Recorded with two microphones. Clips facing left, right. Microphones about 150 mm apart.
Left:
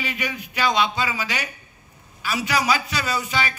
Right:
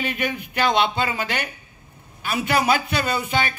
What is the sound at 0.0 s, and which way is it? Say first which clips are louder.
A man's voice: right 3 dB; 55° right (ahead or behind).